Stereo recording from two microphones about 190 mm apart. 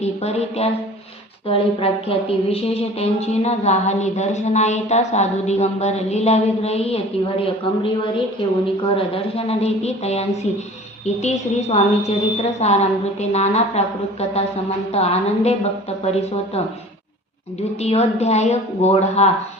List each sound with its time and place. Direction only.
0.0 s a woman's voice: 35° left (ahead or behind)
8.6 s a woman's voice: 30° left (ahead or behind)
17.7 s a woman's voice: 35° left (ahead or behind)